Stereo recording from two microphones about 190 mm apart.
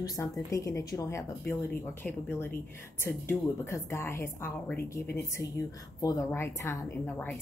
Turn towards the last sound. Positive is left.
turn(degrees=10)  # may be behind; listen again after turning